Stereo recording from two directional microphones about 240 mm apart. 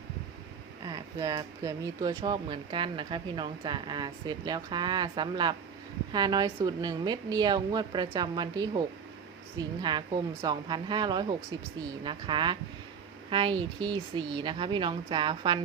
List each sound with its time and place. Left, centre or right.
0.9 s speech: centre